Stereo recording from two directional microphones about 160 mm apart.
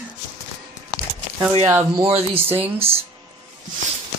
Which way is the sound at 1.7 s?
20° right (ahead or behind).